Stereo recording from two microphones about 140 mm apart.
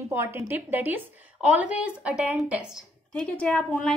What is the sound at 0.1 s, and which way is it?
A woman's voice, 15° right (ahead or behind).